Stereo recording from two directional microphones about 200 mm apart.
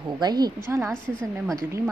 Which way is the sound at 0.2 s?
20° right (ahead or behind).